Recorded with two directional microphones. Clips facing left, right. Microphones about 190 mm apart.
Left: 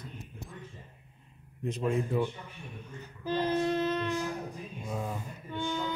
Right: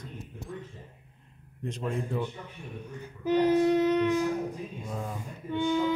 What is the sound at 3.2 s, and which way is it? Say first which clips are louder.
Child singing: right 6 dB; 15° right (ahead or behind).